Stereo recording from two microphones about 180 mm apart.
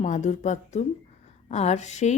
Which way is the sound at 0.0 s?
40° left (ahead or behind).